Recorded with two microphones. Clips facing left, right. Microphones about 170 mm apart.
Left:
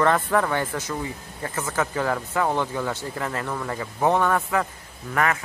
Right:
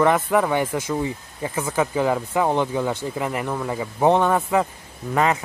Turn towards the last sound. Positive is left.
turn(degrees=-20)  # may be behind; listen again after turning